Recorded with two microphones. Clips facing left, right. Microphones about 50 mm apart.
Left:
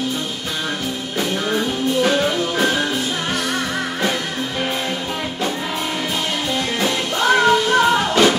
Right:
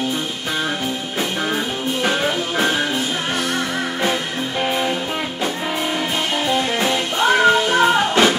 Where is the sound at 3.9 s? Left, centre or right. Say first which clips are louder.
Right 1 dB; centre.